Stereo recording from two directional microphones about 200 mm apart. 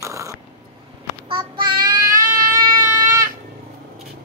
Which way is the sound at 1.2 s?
25° right (ahead or behind).